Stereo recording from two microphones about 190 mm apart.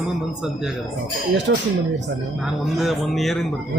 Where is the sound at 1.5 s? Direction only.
70° right (ahead or behind).